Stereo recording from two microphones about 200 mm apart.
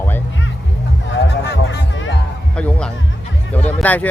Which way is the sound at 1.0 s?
60° left (ahead or behind).